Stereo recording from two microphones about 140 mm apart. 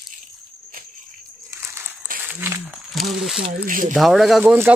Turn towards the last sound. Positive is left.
turn(degrees=-15)  # may be behind; listen again after turning